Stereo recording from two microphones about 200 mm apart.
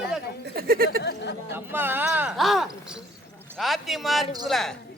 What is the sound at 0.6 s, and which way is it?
Speech, 50° right (ahead or behind).